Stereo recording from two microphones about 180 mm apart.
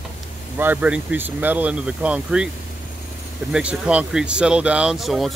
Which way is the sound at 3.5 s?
5° right (ahead or behind).